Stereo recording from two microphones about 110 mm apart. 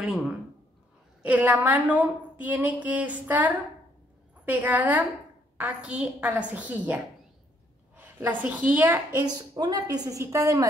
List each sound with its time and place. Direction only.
1.2 s a woman's voice: 15° right (ahead or behind)
8.3 s a woman's voice: 15° right (ahead or behind)
9.2 s a woman's voice: 40° right (ahead or behind)